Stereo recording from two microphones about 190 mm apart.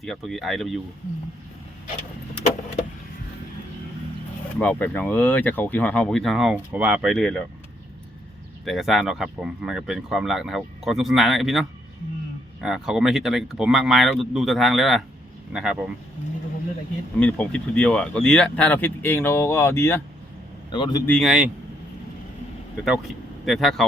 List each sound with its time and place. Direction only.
0.0 s speech: centre (ahead or behind)
4.6 s speech: 10° left (ahead or behind)
8.6 s speech: centre (ahead or behind)
12.6 s speech: 5° right (ahead or behind)
17.2 s speech: 5° left (ahead or behind)
20.7 s a man's voice: 25° left (ahead or behind)
21.1 s speech: centre (ahead or behind)
22.8 s speech: centre (ahead or behind)